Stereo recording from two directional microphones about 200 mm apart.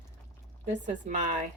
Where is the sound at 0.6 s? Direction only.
35° right (ahead or behind).